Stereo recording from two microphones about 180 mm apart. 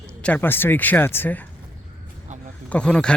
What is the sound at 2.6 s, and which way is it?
Speech, 5° left (ahead or behind).